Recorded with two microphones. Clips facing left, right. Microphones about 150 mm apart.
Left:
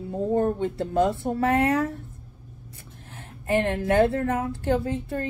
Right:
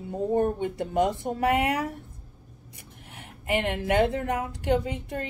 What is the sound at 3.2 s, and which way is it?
Speech, 15° right (ahead or behind).